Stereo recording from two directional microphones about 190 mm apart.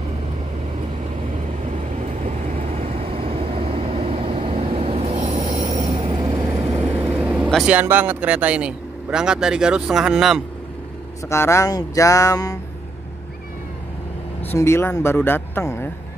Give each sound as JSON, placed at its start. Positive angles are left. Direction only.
{"t": 2.2, "sound": "vehicle", "side_deg": -40}
{"t": 11.2, "sound": "speech", "side_deg": 15}
{"t": 14.4, "sound": "speech", "side_deg": 10}